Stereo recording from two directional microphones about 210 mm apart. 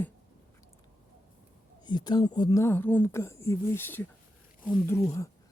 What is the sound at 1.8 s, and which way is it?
Speech, 20° left (ahead or behind).